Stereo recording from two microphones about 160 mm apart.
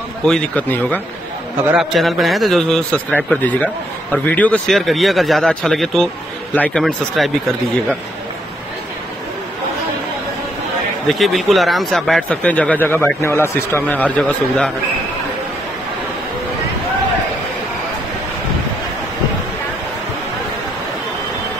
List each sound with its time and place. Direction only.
0.2 s speech: 10° left (ahead or behind)
1.7 s a man's voice: centre (ahead or behind)
11.1 s a man's voice: centre (ahead or behind)